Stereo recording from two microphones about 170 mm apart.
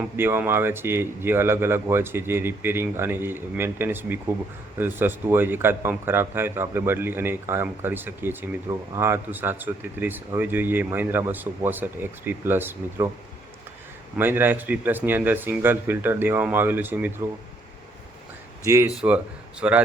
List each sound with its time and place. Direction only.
0.0 s a man's voice: 15° right (ahead or behind)
14.2 s a man's voice: 10° right (ahead or behind)
18.6 s a man's voice: 15° right (ahead or behind)